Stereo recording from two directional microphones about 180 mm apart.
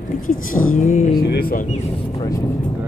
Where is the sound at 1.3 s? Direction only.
55° left (ahead or behind).